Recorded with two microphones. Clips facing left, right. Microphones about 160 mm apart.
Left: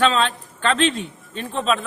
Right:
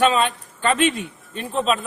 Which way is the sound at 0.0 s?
10° right (ahead or behind).